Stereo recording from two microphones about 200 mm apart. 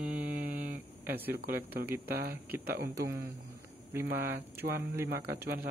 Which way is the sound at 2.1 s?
50° right (ahead or behind).